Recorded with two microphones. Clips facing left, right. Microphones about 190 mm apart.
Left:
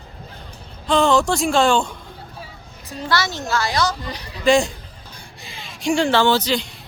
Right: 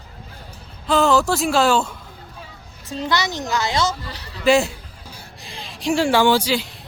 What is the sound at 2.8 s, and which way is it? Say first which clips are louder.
A child's voice: even; 20° right (ahead or behind).